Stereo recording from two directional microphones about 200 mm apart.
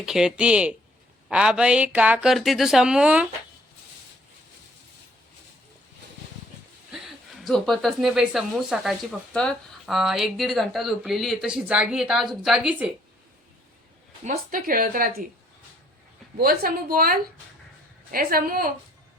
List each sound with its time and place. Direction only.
0.0 s speech: 5° right (ahead or behind)
6.9 s speech: centre (ahead or behind)
14.3 s speech: 45° right (ahead or behind)
16.4 s speech: 45° right (ahead or behind)